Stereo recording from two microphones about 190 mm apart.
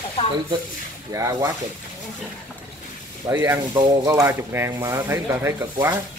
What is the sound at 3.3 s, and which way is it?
Speech, 15° right (ahead or behind).